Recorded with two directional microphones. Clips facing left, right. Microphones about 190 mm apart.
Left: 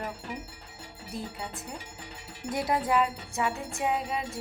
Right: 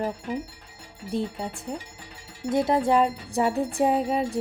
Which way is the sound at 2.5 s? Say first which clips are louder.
Right 6 dB; 25° right (ahead or behind).